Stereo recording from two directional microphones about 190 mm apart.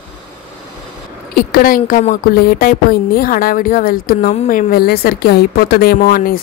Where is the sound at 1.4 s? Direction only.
50° left (ahead or behind).